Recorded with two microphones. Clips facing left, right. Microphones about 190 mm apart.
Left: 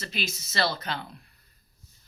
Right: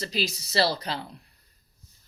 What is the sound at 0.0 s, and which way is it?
Speech, 35° right (ahead or behind).